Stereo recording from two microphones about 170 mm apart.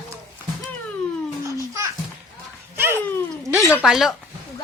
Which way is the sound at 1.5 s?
15° right (ahead or behind).